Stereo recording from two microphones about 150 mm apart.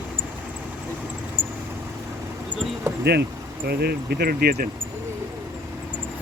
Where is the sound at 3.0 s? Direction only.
90° right.